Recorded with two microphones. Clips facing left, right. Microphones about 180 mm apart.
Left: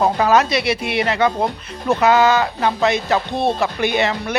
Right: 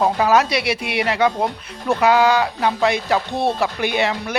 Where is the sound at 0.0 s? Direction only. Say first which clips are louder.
Left 1 dB; 5° right (ahead or behind).